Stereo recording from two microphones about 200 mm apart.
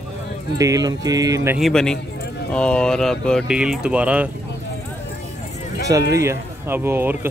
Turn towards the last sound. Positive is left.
turn(degrees=-10)  # may be behind; listen again after turning